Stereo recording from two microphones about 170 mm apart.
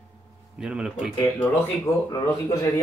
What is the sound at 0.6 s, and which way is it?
Speech, 5° right (ahead or behind).